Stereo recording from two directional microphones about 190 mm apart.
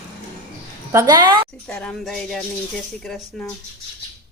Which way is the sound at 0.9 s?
20° right (ahead or behind).